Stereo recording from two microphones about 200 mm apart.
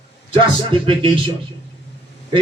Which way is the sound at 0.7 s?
25° right (ahead or behind).